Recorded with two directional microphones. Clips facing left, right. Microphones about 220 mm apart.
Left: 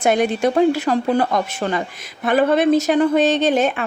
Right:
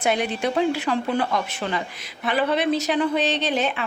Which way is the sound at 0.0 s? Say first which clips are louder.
Left 6 dB; 45° left (ahead or behind).